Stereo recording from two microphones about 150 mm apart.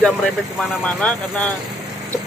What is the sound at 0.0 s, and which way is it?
Speech, 5° left (ahead or behind).